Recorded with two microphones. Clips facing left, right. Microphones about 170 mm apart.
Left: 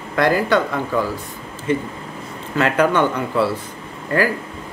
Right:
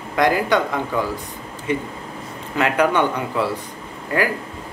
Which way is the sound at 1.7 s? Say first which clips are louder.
Left 3 dB; 15° right (ahead or behind).